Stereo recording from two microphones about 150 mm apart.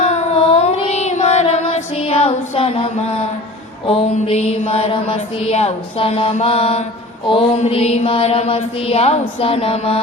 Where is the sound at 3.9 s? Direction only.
45° left (ahead or behind).